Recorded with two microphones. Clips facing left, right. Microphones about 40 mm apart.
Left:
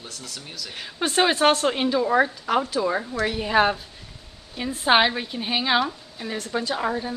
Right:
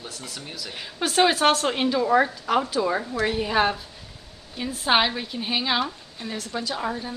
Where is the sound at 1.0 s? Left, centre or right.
Centre.